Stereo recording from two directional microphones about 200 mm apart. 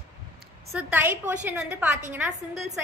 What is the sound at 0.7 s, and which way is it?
A woman's voice, 5° right (ahead or behind).